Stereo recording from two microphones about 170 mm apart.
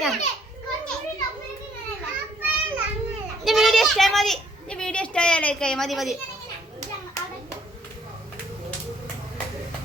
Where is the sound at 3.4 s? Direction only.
Centre (ahead or behind).